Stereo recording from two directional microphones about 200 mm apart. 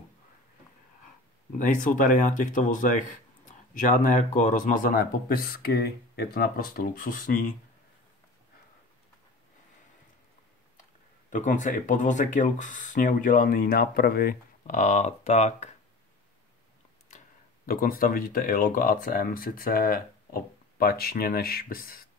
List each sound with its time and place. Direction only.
1.6 s speech: 40° left (ahead or behind)
10.8 s speech: 40° left (ahead or behind)
17.6 s speech: 45° left (ahead or behind)